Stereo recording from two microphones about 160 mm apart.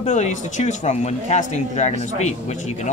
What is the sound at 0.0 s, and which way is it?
Speech, 45° left (ahead or behind).